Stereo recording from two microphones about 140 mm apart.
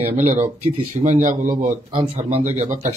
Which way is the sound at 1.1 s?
65° right (ahead or behind).